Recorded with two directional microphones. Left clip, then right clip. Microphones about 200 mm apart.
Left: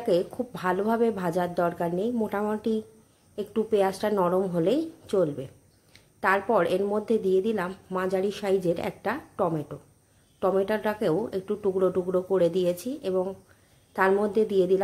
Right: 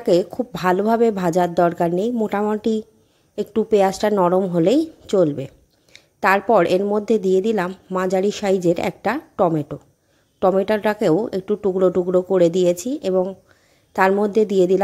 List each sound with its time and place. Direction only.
0.0 s speech: 40° right (ahead or behind)